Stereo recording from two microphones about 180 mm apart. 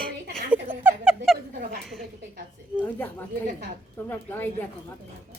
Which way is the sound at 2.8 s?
10° left (ahead or behind).